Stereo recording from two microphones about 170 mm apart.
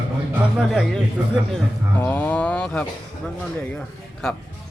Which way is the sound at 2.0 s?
10° left (ahead or behind).